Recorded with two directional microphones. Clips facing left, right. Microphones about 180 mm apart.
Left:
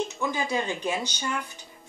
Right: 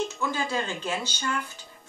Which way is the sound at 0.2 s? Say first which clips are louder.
Left 1 dB; 15° left (ahead or behind).